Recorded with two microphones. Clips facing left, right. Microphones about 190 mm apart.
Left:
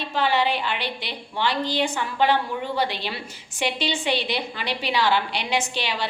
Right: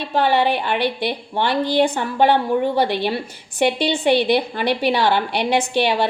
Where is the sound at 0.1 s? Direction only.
55° right (ahead or behind).